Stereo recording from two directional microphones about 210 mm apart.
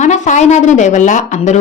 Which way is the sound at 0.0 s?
35° left (ahead or behind).